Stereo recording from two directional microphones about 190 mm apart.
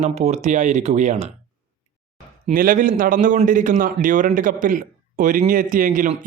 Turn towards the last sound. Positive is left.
turn(degrees=-45)  # may be behind; listen again after turning